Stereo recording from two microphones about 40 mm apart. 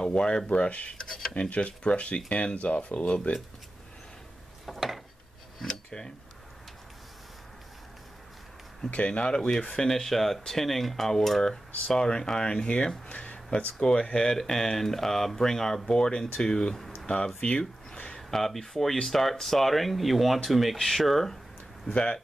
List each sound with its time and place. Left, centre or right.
0.0 s speech: left
0.5 s speech: left
0.9 s dishes: centre
1.3 s speech: left
4.6 s a sound: centre
5.9 s speech: centre
8.9 s speech: left
13.7 s speech: centre
16.7 s a sound: centre
17.0 s speech: left
17.4 s a sound: left
18.3 s speech: centre
21.9 s speech: left